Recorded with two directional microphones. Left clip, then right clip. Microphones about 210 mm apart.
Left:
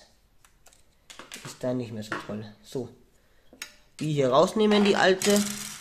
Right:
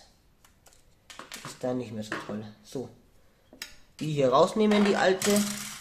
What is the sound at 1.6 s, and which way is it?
Speech, 35° left (ahead or behind).